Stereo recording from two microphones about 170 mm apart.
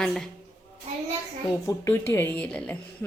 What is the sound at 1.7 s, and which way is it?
A child's voice, 15° left (ahead or behind).